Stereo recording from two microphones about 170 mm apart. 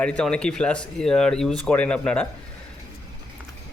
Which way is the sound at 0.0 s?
5° left (ahead or behind).